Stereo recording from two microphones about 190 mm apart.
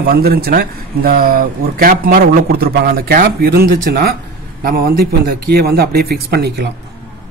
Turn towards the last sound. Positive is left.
turn(degrees=-60)  # may be behind; listen again after turning